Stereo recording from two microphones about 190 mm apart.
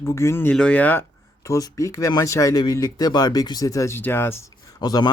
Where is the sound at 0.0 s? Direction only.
15° left (ahead or behind).